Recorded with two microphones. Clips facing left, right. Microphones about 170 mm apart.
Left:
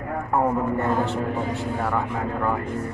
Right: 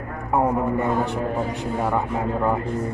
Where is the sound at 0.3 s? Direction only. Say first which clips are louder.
Right 2 dB; 15° right (ahead or behind).